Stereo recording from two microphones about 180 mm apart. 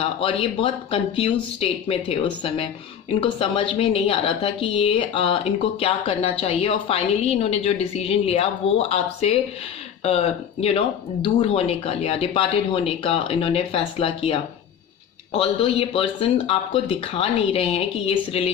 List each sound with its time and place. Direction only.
0.0 s a woman's voice: 30° left (ahead or behind)